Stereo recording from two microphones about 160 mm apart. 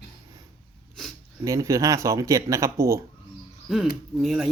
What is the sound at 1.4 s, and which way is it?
Speech, 20° right (ahead or behind).